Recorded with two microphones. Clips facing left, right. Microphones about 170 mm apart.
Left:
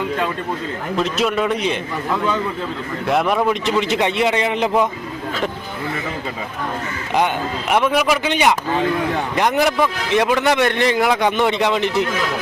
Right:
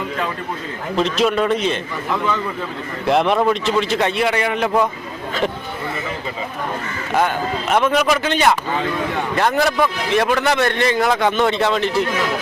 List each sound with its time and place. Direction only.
0.9 s a man's voice: 5° left (ahead or behind)
3.1 s speech: centre (ahead or behind)
3.5 s a man's voice: 15° left (ahead or behind)
7.7 s a man's voice: 10° left (ahead or behind)